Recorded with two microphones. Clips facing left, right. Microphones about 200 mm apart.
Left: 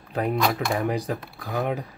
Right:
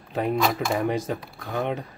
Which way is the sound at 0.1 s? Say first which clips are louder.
Even; centre (ahead or behind).